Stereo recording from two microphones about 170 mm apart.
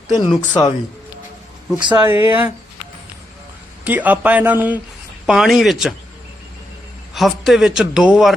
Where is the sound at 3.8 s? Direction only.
10° right (ahead or behind).